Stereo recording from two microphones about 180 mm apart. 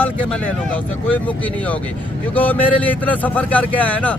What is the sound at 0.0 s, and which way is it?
A man's voice, 5° left (ahead or behind).